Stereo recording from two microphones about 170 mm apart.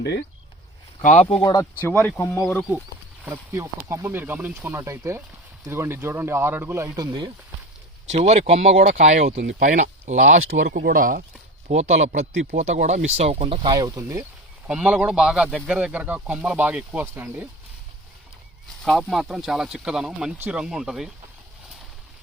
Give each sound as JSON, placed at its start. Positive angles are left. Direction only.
{"t": 1.0, "sound": "speech", "side_deg": 40}
{"t": 1.8, "sound": "speech", "side_deg": 10}
{"t": 3.8, "sound": "speech", "side_deg": -15}
{"t": 8.0, "sound": "speech", "side_deg": -40}
{"t": 9.4, "sound": "speech", "side_deg": -90}
{"t": 9.6, "sound": "speech", "side_deg": -45}
{"t": 10.8, "sound": "speech", "side_deg": -55}
{"t": 11.7, "sound": "speech", "side_deg": -40}
{"t": 14.7, "sound": "speech", "side_deg": -5}
{"t": 18.8, "sound": "speech", "side_deg": 0}